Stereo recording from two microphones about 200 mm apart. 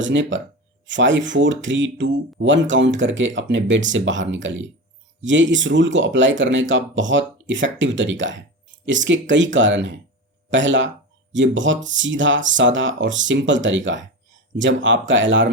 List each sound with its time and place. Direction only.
0.0 s speech: 65° right (ahead or behind)